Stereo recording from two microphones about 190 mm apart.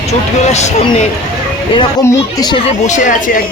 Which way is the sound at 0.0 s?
35° left (ahead or behind).